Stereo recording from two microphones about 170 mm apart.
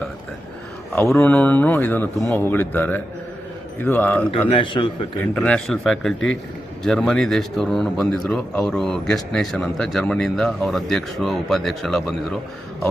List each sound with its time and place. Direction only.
1.1 s speech: 10° left (ahead or behind)
4.3 s a man's voice: 30° left (ahead or behind)
5.2 s speech: 5° left (ahead or behind)